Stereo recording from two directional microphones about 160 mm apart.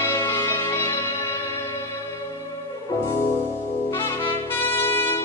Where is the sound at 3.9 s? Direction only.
15° left (ahead or behind).